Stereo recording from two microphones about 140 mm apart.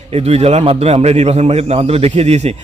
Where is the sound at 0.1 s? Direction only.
45° right (ahead or behind).